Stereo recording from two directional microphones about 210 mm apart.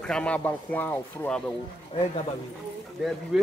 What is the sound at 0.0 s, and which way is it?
Speech, 5° left (ahead or behind).